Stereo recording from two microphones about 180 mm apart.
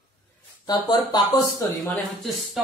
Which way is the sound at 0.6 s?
25° left (ahead or behind).